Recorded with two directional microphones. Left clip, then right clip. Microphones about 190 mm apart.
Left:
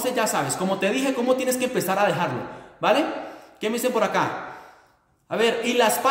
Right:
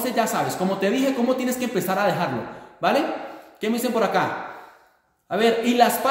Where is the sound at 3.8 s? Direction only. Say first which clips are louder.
Right 1 dB; 10° left (ahead or behind).